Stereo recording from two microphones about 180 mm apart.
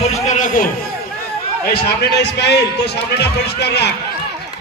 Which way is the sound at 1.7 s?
70° left (ahead or behind).